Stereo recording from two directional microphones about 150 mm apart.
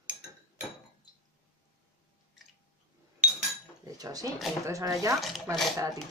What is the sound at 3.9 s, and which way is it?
Speech, 25° right (ahead or behind).